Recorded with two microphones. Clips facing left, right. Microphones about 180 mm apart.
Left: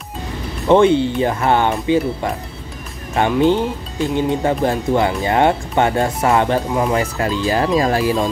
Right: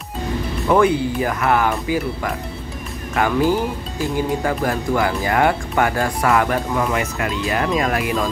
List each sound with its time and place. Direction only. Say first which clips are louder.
0.7 s speech: left 4 dB; 25° left (ahead or behind)